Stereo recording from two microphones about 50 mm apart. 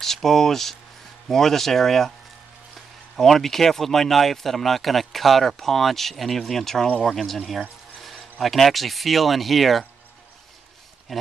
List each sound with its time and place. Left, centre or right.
0.0 s speech: centre
3.2 s speech: centre
11.1 s speech: centre